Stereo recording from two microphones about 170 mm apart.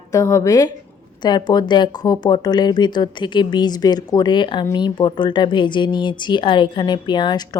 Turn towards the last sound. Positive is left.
turn(degrees=25)  # may be behind; listen again after turning